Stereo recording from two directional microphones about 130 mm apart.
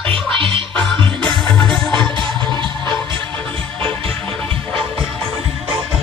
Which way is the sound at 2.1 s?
35° right (ahead or behind).